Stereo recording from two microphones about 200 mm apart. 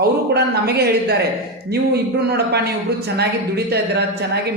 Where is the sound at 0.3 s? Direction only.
55° right (ahead or behind).